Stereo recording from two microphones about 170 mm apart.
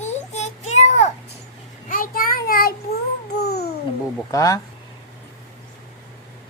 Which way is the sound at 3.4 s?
70° left (ahead or behind).